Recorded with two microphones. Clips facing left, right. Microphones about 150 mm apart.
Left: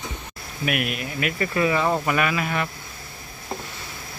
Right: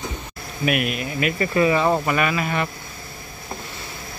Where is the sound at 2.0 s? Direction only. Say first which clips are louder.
Right 1 dB; centre (ahead or behind).